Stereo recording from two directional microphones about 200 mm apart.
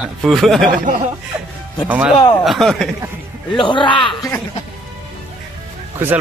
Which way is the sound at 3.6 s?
25° left (ahead or behind).